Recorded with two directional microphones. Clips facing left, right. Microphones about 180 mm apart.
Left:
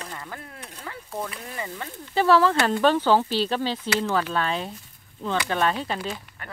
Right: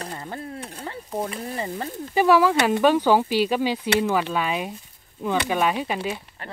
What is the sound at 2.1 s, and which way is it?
Speech, 10° right (ahead or behind).